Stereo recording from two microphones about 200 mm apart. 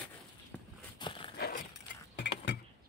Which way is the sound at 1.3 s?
50° left (ahead or behind).